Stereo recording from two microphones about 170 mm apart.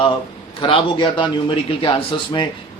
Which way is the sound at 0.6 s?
30° left (ahead or behind).